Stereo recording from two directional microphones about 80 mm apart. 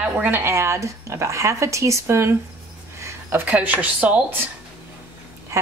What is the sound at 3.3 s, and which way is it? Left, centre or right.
A woman's voice, centre.